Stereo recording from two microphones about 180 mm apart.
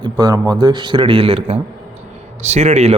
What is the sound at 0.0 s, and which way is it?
A man's voice, 20° right (ahead or behind).